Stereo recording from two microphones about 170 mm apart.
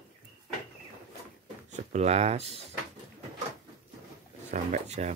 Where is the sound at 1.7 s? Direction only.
45° right (ahead or behind).